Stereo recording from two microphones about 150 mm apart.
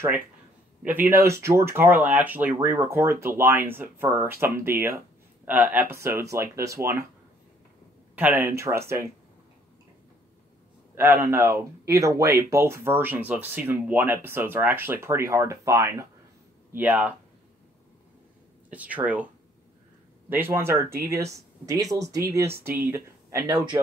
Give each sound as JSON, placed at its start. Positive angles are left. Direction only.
{"t": 0.8, "sound": "speech", "side_deg": -15}
{"t": 8.2, "sound": "speech", "side_deg": -15}
{"t": 11.0, "sound": "speech", "side_deg": -15}
{"t": 18.7, "sound": "speech", "side_deg": -10}
{"t": 20.2, "sound": "speech", "side_deg": -15}